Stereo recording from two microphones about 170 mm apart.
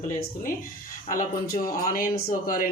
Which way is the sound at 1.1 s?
55° left (ahead or behind).